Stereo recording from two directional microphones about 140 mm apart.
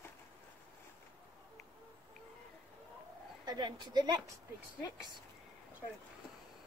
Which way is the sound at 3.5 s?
30° right (ahead or behind).